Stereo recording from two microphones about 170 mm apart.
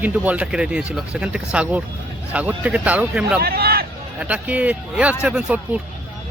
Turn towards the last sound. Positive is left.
turn(degrees=-10)  # may be behind; listen again after turning